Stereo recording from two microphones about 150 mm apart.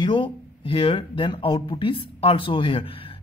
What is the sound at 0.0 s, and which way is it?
Speech, 35° left (ahead or behind).